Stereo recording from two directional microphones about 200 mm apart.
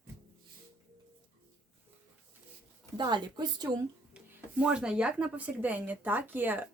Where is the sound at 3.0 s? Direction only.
20° right (ahead or behind).